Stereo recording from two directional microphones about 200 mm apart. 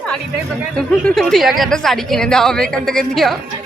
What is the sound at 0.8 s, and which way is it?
Speech, centre (ahead or behind).